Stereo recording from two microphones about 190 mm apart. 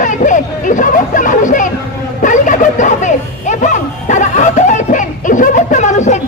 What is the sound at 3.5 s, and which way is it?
Music, 40° left (ahead or behind).